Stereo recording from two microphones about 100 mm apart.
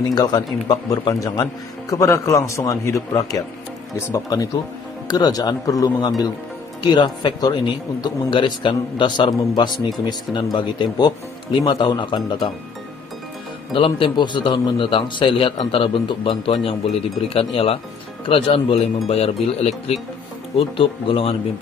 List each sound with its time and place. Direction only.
0.1 s a man's voice: 45° left (ahead or behind)
13.7 s a man's voice: 60° left (ahead or behind)
19.0 s speech: 90° left
20.5 s speech: 65° left (ahead or behind)